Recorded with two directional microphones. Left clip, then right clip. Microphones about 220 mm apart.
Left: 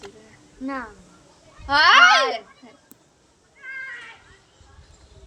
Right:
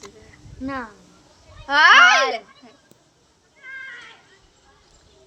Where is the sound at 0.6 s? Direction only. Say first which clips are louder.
Right 1 dB; 30° right (ahead or behind).